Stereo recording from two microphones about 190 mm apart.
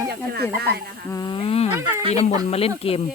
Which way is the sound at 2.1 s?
35° left (ahead or behind).